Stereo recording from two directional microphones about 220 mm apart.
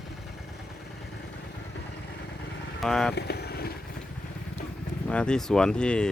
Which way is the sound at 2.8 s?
Centre (ahead or behind).